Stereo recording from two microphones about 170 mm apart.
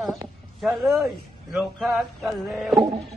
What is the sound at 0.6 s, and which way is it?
Speech, centre (ahead or behind).